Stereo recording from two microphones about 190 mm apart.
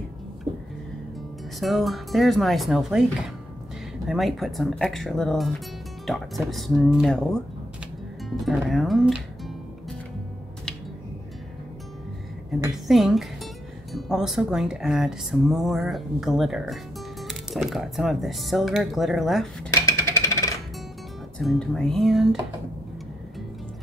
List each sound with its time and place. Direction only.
1.6 s speech: centre (ahead or behind)
12.8 s speech: centre (ahead or behind)
19.7 s a sound: 15° left (ahead or behind)
21.4 s speech: centre (ahead or behind)